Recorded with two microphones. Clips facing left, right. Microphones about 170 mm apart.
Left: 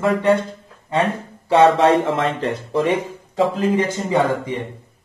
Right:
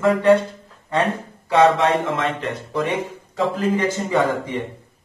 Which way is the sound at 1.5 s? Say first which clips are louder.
Left 3 dB; 30° left (ahead or behind).